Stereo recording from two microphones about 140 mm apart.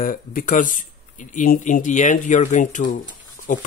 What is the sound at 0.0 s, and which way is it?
Speech, 80° left.